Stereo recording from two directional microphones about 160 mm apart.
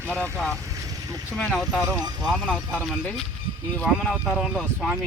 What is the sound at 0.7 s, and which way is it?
Vehicle, 20° right (ahead or behind).